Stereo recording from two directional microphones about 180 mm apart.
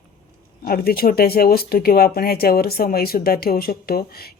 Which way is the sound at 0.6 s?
55° left (ahead or behind).